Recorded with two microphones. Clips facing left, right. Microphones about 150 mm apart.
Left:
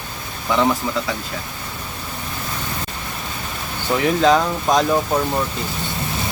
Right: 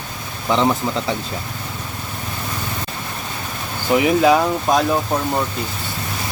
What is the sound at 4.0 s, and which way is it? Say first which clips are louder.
Speech: right 1 dB; 10° right (ahead or behind).